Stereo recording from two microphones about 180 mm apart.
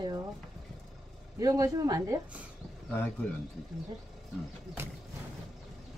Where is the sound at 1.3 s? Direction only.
20° right (ahead or behind).